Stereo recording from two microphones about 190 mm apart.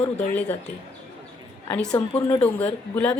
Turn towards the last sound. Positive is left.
turn(degrees=10)  # may be behind; listen again after turning